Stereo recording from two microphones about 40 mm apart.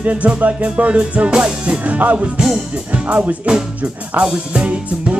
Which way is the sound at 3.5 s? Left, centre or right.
Right.